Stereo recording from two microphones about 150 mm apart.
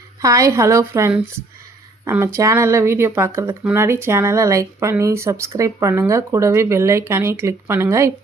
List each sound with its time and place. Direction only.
0.2 s speech: 20° right (ahead or behind)